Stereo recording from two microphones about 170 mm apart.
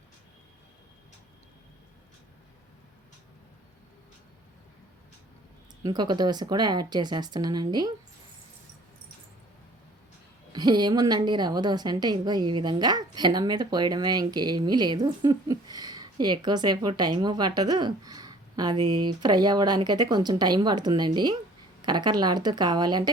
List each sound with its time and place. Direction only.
5.8 s a woman's voice: 25° right (ahead or behind)
10.5 s a woman's voice: 25° right (ahead or behind)